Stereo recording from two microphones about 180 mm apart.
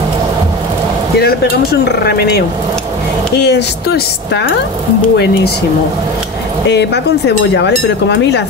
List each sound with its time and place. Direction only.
1.2 s speech: 65° left (ahead or behind)
6.7 s speech: 70° left (ahead or behind)